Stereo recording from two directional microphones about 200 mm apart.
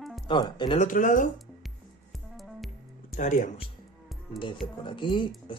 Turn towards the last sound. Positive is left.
turn(degrees=25)  # may be behind; listen again after turning